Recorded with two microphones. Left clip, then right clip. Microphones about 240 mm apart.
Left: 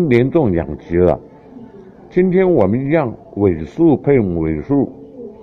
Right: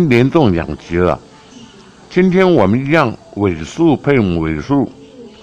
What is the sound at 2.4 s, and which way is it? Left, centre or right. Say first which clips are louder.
A man's voice: right 3 dB; right.